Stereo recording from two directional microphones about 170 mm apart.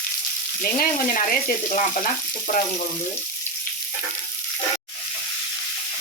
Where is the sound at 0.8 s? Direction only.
55° left (ahead or behind).